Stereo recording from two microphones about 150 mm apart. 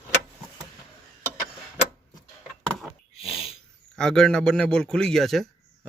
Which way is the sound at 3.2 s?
40° left (ahead or behind).